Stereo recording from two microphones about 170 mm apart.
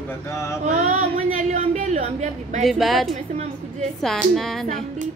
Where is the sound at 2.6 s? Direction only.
Centre (ahead or behind).